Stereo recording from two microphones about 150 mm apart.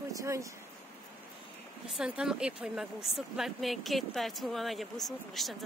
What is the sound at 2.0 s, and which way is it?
Speech, 5° right (ahead or behind).